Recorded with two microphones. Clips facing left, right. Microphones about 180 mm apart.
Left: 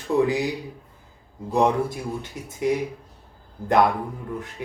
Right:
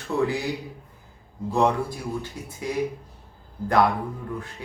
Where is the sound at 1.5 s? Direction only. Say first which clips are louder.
Left 2 dB; 20° left (ahead or behind).